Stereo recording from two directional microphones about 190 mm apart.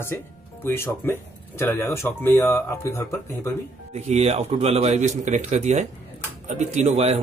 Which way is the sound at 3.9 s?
35° right (ahead or behind).